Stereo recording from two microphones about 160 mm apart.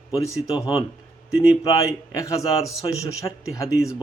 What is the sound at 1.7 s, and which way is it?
Speech, 20° left (ahead or behind).